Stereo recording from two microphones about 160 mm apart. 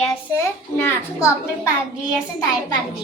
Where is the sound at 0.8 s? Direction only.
15° left (ahead or behind).